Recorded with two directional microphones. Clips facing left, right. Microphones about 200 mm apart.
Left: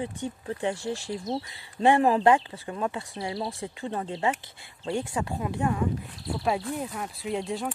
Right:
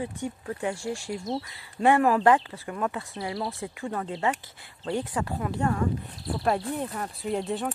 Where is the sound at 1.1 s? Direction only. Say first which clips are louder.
Even; centre (ahead or behind).